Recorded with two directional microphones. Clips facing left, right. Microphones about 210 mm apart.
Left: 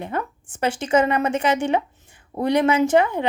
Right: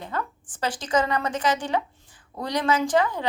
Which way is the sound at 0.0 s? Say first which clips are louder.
Left 4 dB; 20° left (ahead or behind).